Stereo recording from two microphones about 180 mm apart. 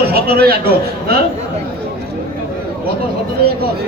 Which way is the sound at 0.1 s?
60° right (ahead or behind).